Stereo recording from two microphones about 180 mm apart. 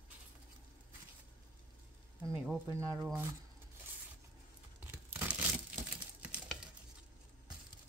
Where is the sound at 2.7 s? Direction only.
15° right (ahead or behind).